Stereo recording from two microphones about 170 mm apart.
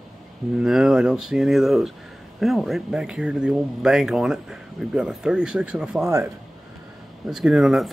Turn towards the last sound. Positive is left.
turn(degrees=0)  # may be behind; listen again after turning